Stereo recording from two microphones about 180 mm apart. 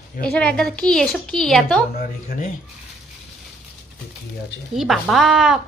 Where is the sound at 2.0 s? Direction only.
55° left (ahead or behind).